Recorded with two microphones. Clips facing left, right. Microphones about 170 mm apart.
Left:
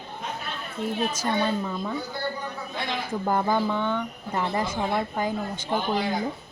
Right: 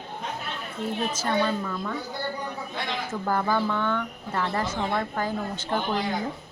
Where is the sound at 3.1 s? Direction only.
20° left (ahead or behind).